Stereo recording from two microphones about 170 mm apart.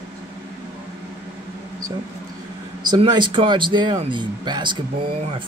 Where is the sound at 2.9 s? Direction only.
25° right (ahead or behind).